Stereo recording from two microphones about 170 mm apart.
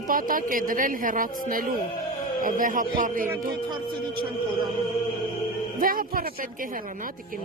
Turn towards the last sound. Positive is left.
turn(degrees=-55)  # may be behind; listen again after turning